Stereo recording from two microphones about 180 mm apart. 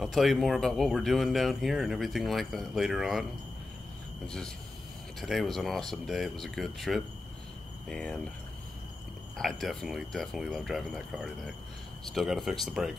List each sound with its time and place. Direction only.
0.0 s speech: centre (ahead or behind)
5.2 s speech: centre (ahead or behind)
9.4 s speech: centre (ahead or behind)